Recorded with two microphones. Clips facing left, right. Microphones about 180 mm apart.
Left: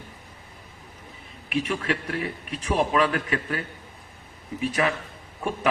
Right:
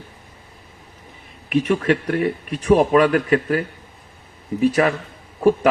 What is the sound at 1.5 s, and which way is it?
Speech, 45° right (ahead or behind).